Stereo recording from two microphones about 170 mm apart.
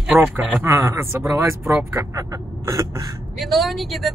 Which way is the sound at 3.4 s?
Centre (ahead or behind).